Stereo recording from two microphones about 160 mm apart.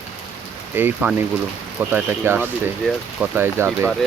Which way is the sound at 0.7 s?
15° right (ahead or behind).